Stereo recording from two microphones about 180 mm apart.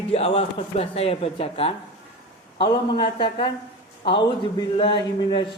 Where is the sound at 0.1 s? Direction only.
35° left (ahead or behind).